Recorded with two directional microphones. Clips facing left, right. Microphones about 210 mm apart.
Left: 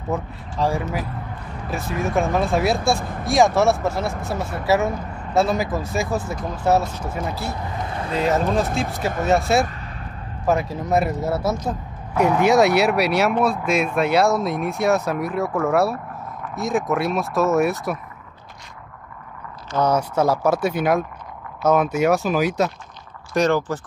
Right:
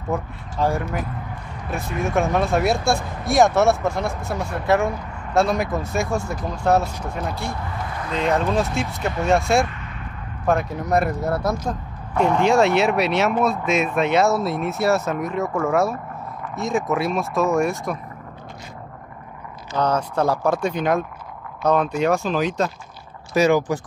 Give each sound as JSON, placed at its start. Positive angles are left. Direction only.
{"t": 0.1, "sound": "speech", "side_deg": 0}
{"t": 2.0, "sound": "speech", "side_deg": 0}
{"t": 7.8, "sound": "vehicle", "side_deg": 30}
{"t": 8.3, "sound": "speech", "side_deg": 0}
{"t": 19.8, "sound": "speech", "side_deg": 10}
{"t": 23.3, "sound": "speech", "side_deg": -10}